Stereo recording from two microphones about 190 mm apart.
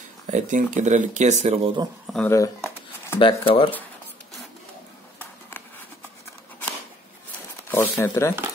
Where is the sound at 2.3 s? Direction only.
15° left (ahead or behind).